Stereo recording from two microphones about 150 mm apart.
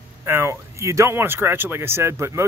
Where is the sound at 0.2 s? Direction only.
15° right (ahead or behind).